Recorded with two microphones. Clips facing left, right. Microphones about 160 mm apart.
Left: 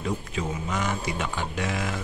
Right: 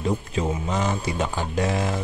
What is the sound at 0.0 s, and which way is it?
Speech, 30° right (ahead or behind).